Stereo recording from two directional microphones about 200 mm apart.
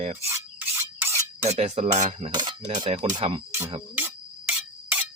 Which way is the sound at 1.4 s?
35° right (ahead or behind).